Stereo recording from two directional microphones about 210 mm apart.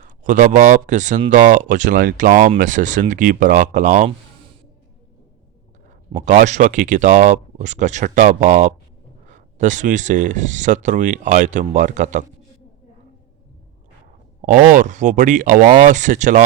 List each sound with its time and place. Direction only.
0.3 s speech: 40° right (ahead or behind)
6.1 s speech: 35° right (ahead or behind)
14.4 s speech: 40° right (ahead or behind)